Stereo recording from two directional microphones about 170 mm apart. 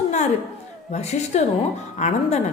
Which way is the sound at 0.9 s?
40° left (ahead or behind).